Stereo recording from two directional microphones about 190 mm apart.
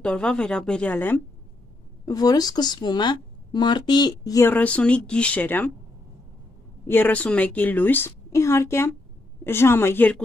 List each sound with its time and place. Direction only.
0.0 s speech: 5° left (ahead or behind)
2.0 s speech: 20° left (ahead or behind)
6.9 s speech: 10° left (ahead or behind)